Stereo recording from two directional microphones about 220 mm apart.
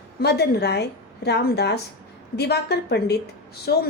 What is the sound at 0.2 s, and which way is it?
A woman's voice, 50° left (ahead or behind).